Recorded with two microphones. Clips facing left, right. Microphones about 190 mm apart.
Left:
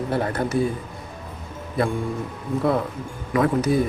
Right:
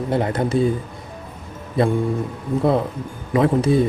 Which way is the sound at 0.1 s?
20° right (ahead or behind).